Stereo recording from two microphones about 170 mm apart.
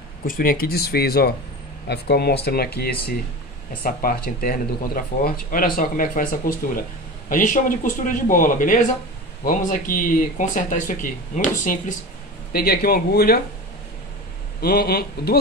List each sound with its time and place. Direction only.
0.3 s speech: 60° left (ahead or behind)
12.5 s speech: 65° left (ahead or behind)
14.6 s speech: 65° left (ahead or behind)